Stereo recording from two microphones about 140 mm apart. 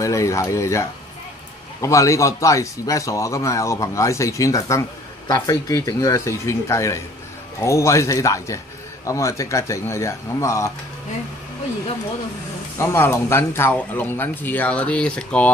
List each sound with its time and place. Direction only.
0.0 s a man's voice: 20° left (ahead or behind)
12.7 s speech: 15° left (ahead or behind)